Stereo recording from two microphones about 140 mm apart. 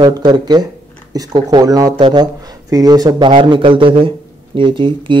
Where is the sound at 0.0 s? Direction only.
30° right (ahead or behind).